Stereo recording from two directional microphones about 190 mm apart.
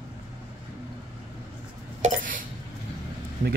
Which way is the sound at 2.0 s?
40° right (ahead or behind).